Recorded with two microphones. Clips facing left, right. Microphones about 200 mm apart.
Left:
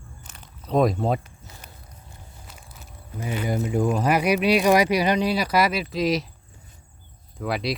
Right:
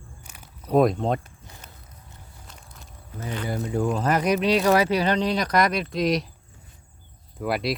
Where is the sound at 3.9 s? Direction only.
10° left (ahead or behind).